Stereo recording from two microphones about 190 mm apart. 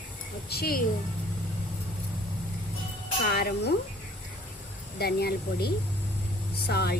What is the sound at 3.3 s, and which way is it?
Speech, 60° left (ahead or behind).